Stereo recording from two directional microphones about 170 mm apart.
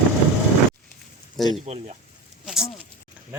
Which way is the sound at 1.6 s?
40° right (ahead or behind).